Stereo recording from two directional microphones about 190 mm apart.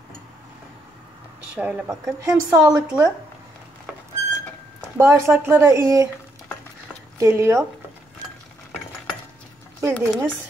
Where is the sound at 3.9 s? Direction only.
10° right (ahead or behind).